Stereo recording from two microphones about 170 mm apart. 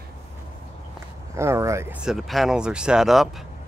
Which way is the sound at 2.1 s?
Centre (ahead or behind).